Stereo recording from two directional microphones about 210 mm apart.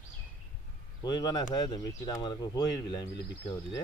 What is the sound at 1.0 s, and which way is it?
Speech, 20° left (ahead or behind).